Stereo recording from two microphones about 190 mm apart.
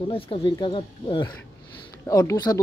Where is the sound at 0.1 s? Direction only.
25° left (ahead or behind).